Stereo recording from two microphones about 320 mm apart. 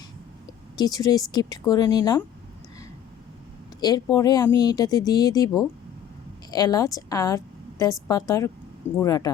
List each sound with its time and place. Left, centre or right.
0.8 s speech: centre
3.8 s a woman's voice: centre